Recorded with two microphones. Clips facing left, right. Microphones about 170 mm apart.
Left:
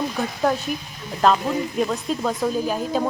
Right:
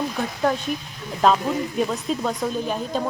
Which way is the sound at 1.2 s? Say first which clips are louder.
Even; centre (ahead or behind).